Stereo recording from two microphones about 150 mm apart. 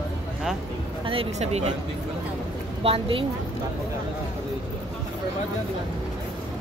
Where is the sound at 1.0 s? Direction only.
35° right (ahead or behind).